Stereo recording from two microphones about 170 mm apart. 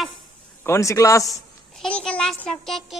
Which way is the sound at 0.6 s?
15° left (ahead or behind).